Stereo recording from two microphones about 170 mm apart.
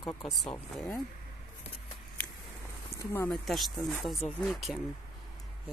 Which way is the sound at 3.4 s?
Centre (ahead or behind).